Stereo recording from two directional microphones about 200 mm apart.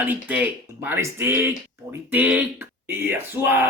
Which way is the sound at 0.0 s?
10° right (ahead or behind).